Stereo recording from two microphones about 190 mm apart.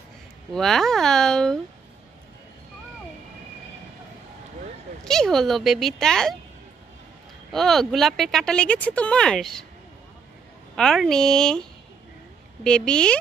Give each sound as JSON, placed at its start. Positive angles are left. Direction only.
{"t": 0.5, "sound": "speech", "side_deg": 0}
{"t": 5.0, "sound": "speech", "side_deg": 5}
{"t": 7.5, "sound": "speech", "side_deg": 0}
{"t": 10.8, "sound": "speech", "side_deg": 0}
{"t": 12.6, "sound": "speech", "side_deg": 5}